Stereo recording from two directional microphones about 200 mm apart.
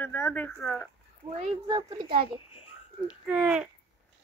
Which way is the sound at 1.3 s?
25° right (ahead or behind).